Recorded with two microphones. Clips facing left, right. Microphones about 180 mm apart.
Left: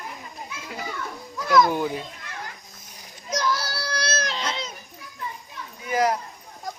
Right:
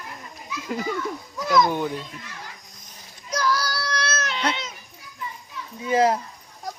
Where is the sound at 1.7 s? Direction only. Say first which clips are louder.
Even; 5° left (ahead or behind).